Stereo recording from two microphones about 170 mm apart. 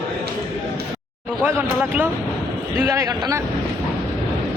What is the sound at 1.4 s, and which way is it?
A man's voice, 10° right (ahead or behind).